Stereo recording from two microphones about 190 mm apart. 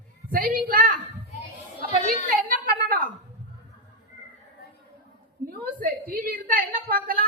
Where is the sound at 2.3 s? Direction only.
45° right (ahead or behind).